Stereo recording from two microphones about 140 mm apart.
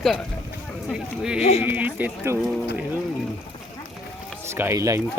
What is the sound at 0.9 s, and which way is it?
Speech, 5° right (ahead or behind).